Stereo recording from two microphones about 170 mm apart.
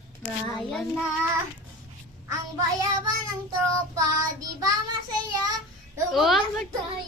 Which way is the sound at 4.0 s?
20° right (ahead or behind).